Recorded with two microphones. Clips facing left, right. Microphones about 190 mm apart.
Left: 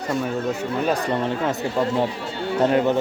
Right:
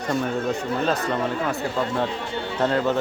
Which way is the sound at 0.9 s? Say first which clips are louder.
Left 3 dB; 20° left (ahead or behind).